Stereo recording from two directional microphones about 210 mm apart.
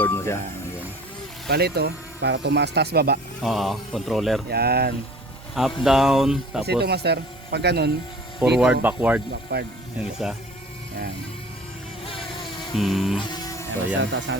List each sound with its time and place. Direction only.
0.0 s music: 10° left (ahead or behind)
1.5 s speech: 50° right (ahead or behind)
3.4 s speech: centre (ahead or behind)
4.4 s speech: 50° right (ahead or behind)
5.8 s speech: centre (ahead or behind)
6.7 s speech: 50° right (ahead or behind)
8.5 s speech: 5° right (ahead or behind)
9.3 s speech: 50° right (ahead or behind)
10.0 s speech: centre (ahead or behind)
12.0 s music: 25° left (ahead or behind)
12.7 s speech: centre (ahead or behind)
13.1 s music: 20° left (ahead or behind)
14.0 s speech: 60° right (ahead or behind)